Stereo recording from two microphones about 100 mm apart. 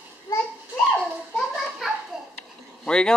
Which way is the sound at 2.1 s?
5° right (ahead or behind).